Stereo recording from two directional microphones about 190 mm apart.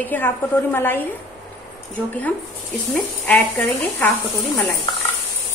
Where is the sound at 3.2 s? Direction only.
10° left (ahead or behind).